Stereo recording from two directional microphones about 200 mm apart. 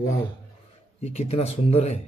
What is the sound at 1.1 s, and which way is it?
Speech, 30° left (ahead or behind).